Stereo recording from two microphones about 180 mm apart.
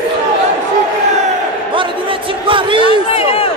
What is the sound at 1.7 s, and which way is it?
Speech, 30° right (ahead or behind).